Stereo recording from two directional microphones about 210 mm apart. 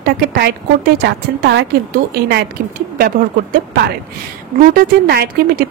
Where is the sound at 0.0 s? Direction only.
50° right (ahead or behind).